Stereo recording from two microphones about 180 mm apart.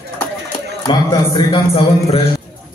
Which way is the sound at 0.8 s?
25° left (ahead or behind).